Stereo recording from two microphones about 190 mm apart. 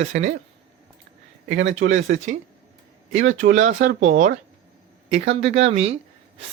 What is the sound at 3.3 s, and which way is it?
Speech, 40° right (ahead or behind).